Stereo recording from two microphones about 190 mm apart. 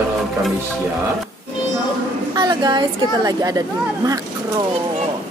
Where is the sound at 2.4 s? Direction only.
20° right (ahead or behind).